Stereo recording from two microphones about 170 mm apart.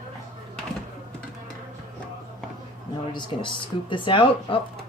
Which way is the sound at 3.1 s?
25° left (ahead or behind).